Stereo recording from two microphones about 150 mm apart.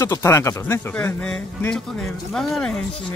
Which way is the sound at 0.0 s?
20° left (ahead or behind).